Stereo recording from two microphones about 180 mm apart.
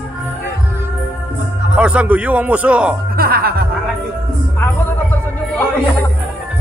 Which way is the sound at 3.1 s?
55° right (ahead or behind).